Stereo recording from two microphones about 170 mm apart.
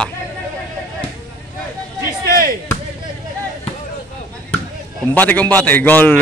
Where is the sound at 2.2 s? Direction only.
60° right (ahead or behind).